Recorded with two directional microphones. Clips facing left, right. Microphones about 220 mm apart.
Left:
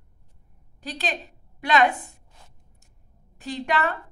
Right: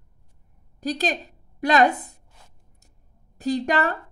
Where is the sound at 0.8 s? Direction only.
40° right (ahead or behind).